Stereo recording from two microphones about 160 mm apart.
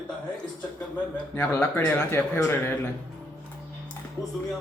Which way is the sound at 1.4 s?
15° left (ahead or behind).